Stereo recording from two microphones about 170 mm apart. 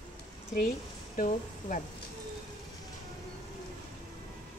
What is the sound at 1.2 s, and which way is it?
Speech, 50° left (ahead or behind).